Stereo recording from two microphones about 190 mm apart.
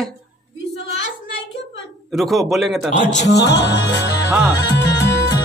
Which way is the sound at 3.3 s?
65° left (ahead or behind).